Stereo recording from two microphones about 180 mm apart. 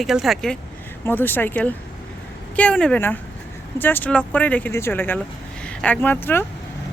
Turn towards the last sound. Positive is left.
turn(degrees=10)  # may be behind; listen again after turning